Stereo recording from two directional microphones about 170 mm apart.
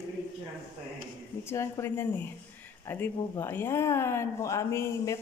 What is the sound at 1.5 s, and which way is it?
Speech, 15° left (ahead or behind).